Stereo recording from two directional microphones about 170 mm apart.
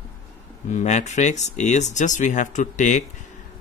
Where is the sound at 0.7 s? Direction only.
45° left (ahead or behind).